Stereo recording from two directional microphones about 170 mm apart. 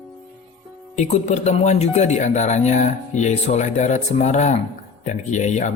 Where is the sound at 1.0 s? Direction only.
45° left (ahead or behind).